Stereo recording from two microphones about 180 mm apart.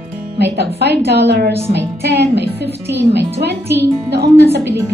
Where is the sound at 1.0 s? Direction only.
70° right (ahead or behind).